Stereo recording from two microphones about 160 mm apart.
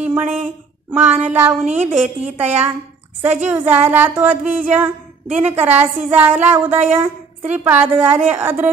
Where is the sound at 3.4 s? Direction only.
10° right (ahead or behind).